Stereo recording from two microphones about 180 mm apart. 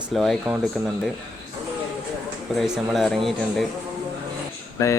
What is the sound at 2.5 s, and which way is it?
A man's voice, centre (ahead or behind).